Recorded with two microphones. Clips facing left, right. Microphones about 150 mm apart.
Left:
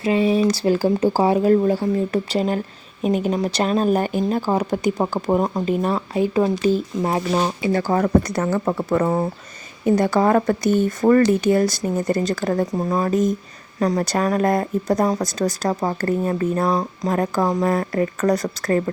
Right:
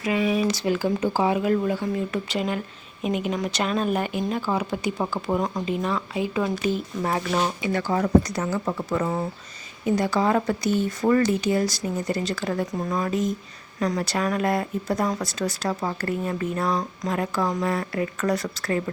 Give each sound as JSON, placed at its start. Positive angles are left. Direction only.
{"t": 0.0, "sound": "speech", "side_deg": 30}
{"t": 12.7, "sound": "speech", "side_deg": 30}